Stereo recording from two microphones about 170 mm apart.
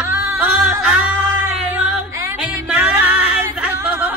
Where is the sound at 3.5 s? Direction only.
10° right (ahead or behind).